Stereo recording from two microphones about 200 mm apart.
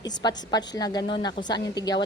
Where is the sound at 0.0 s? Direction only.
20° left (ahead or behind).